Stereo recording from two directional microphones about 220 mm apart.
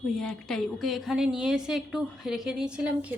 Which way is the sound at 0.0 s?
Centre (ahead or behind).